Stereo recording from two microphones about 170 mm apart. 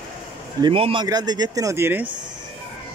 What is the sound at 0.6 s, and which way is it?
A man's voice, 30° right (ahead or behind).